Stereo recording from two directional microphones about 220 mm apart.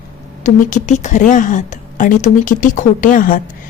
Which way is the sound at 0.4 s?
35° left (ahead or behind).